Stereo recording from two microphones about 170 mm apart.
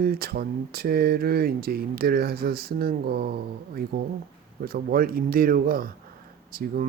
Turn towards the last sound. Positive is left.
turn(degrees=-60)  # may be behind; listen again after turning